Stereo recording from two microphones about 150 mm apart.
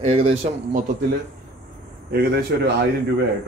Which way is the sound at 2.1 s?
90° right.